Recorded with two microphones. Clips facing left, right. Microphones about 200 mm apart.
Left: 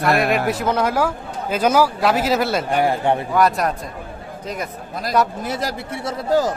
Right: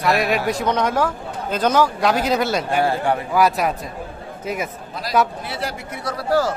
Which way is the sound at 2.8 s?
25° left (ahead or behind).